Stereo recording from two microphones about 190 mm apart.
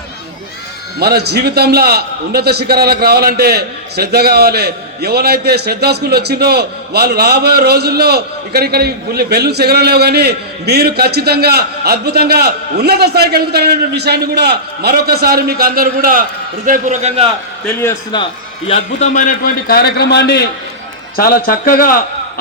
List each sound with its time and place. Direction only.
0.9 s a man's voice: 55° right (ahead or behind); by 17.2 s 35° right (ahead or behind)
17.7 s a man's voice: 15° left (ahead or behind)
18.7 s a man's voice: 40° left (ahead or behind); by 20.5 s 60° left (ahead or behind)
21.2 s a man's voice: 50° left (ahead or behind)